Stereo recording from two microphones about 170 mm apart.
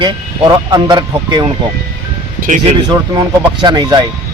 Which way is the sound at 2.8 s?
25° right (ahead or behind).